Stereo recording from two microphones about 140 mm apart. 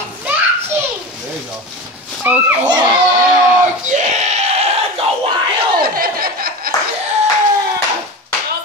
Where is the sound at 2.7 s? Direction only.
35° right (ahead or behind).